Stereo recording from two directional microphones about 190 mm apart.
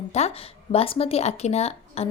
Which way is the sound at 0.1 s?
35° left (ahead or behind).